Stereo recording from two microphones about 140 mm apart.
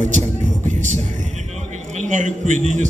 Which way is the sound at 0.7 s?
60° right (ahead or behind).